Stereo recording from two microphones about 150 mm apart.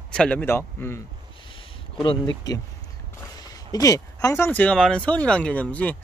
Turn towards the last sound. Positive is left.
turn(degrees=10)  # may be behind; listen again after turning